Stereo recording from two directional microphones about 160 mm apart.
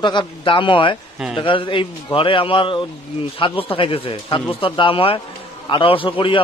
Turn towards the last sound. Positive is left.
turn(degrees=30)  # may be behind; listen again after turning